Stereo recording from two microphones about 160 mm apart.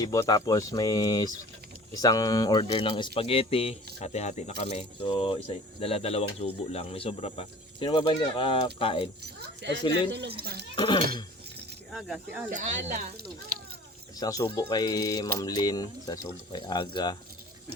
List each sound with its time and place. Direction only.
0.0 s speech: 25° left (ahead or behind)
9.2 s speech: 90° right
10.8 s speech: 30° left (ahead or behind)
11.9 s speech: centre (ahead or behind)
12.5 s speech: 50° right (ahead or behind)
14.2 s speech: 20° left (ahead or behind)